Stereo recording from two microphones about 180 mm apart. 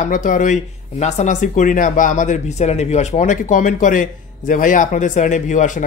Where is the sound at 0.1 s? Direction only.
45° left (ahead or behind).